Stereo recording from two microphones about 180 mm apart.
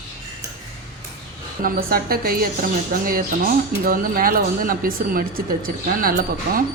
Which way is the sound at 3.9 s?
50° right (ahead or behind).